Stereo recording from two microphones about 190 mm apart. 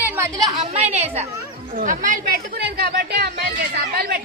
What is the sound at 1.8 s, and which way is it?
Speech, 45° right (ahead or behind).